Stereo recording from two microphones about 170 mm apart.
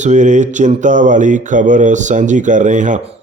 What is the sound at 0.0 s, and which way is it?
Speech, 45° right (ahead or behind).